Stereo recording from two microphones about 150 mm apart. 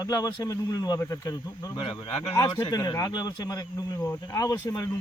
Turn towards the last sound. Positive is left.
turn(degrees=25)  # may be behind; listen again after turning